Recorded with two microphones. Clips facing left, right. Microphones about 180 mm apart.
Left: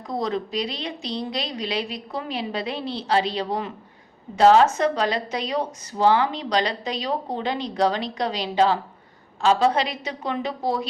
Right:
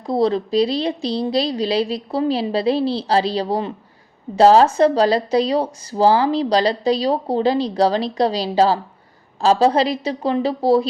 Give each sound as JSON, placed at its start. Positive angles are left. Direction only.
{"t": 0.0, "sound": "speech", "side_deg": -30}